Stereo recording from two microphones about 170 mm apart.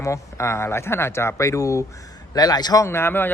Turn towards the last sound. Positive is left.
turn(degrees=10)  # may be behind; listen again after turning